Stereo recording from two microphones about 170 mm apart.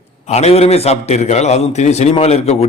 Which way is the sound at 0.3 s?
40° left (ahead or behind).